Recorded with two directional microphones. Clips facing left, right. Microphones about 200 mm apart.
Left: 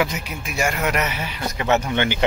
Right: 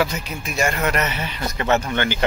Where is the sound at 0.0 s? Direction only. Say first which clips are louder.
Right 1 dB; 15° left (ahead or behind).